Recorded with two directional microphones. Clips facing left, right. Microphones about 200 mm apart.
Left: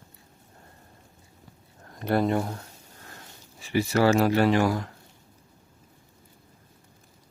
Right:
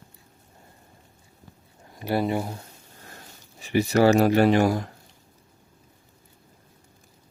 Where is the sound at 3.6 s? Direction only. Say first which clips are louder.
Right 3 dB; 20° right (ahead or behind).